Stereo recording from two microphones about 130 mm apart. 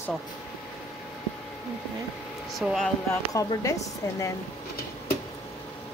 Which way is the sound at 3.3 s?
25° left (ahead or behind).